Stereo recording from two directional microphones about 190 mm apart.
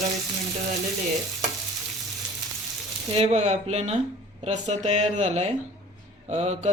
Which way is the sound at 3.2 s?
35° right (ahead or behind).